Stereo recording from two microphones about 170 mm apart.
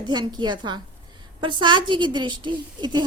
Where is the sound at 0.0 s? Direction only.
25° right (ahead or behind).